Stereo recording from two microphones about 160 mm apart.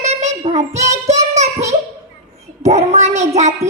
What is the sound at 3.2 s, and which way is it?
Music, 45° right (ahead or behind).